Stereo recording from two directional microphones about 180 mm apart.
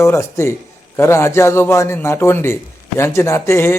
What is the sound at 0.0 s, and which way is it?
A man's voice, 15° left (ahead or behind).